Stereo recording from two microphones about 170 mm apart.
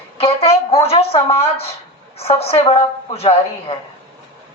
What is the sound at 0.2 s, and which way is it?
A woman's voice, 35° left (ahead or behind).